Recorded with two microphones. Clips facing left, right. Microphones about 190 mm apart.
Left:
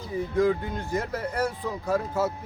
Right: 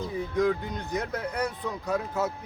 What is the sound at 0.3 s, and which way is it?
Speech, 5° left (ahead or behind).